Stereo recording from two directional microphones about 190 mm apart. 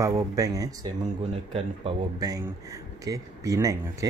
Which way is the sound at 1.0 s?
30° right (ahead or behind).